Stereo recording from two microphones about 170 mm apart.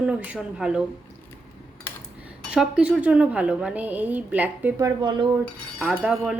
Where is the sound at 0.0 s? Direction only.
10° right (ahead or behind).